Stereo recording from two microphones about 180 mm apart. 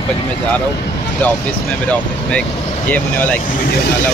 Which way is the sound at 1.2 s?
5° left (ahead or behind).